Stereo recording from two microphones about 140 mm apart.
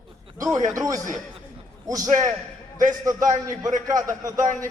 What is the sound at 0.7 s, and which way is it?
A man's voice, 25° right (ahead or behind).